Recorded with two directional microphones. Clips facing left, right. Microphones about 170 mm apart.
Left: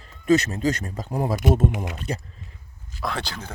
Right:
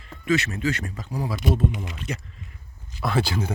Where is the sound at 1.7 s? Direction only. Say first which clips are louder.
Left 3 dB; 65° left (ahead or behind).